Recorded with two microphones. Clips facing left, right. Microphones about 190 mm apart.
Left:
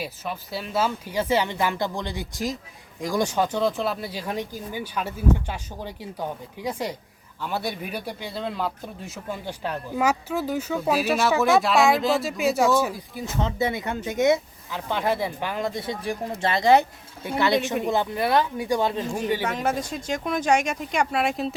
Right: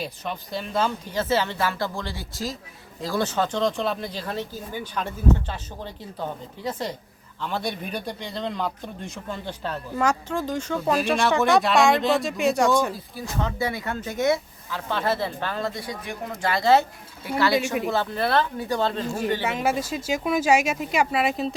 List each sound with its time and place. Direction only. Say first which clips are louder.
0.0 s speech: even; 5° left (ahead or behind)
13.1 s speech: left 3 dB; 20° left (ahead or behind)
19.5 s speech: right 1 dB; 5° right (ahead or behind)